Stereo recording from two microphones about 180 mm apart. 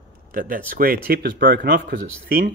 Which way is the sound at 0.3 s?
50° right (ahead or behind).